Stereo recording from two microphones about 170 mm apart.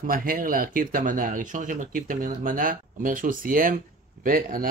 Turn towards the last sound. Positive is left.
turn(degrees=-55)  # may be behind; listen again after turning